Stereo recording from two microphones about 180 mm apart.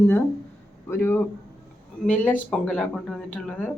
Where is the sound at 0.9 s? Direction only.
10° left (ahead or behind).